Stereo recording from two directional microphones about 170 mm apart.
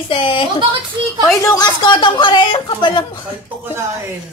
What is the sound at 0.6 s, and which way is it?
Speech, 30° right (ahead or behind).